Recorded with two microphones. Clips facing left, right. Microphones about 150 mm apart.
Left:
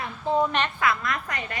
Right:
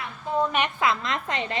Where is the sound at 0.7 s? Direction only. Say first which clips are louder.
Right 1 dB; 20° right (ahead or behind).